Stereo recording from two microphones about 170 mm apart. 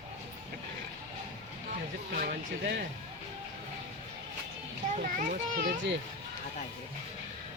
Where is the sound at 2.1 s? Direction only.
60° right (ahead or behind).